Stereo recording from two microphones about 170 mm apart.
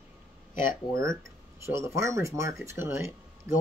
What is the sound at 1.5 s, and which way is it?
Speech, 15° right (ahead or behind).